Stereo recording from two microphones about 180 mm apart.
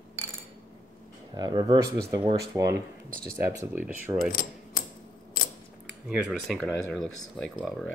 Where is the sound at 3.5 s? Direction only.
10° right (ahead or behind).